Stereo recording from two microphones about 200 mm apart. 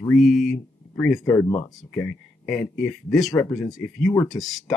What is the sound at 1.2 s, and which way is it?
Speech, 15° left (ahead or behind).